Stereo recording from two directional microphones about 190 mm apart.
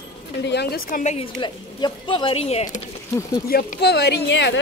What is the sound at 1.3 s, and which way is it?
Speech, 25° left (ahead or behind).